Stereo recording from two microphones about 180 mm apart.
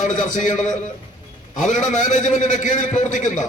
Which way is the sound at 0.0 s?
45° left (ahead or behind).